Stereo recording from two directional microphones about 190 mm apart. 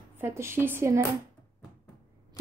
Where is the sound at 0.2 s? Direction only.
15° right (ahead or behind).